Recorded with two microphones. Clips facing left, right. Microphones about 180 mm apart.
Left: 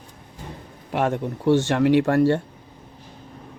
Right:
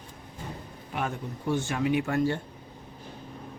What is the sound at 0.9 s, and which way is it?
Speech, 75° left (ahead or behind).